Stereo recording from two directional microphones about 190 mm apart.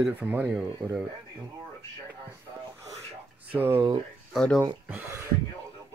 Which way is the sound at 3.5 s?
15° right (ahead or behind).